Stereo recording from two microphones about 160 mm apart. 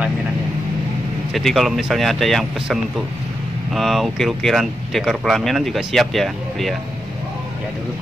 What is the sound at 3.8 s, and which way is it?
Speech, centre (ahead or behind).